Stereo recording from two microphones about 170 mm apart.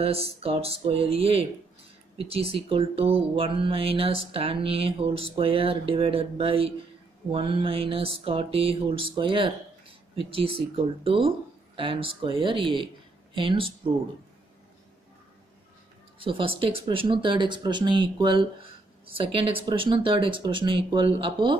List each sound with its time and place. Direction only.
0.0 s speech: 35° right (ahead or behind)
16.2 s speech: 30° right (ahead or behind)